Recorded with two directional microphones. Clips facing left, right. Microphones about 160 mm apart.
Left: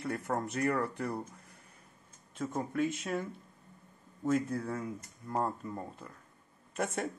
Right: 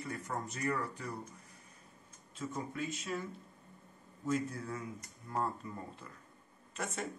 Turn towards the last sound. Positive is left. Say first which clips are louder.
# left 6 dB
turn(degrees=55)  # may be behind; listen again after turning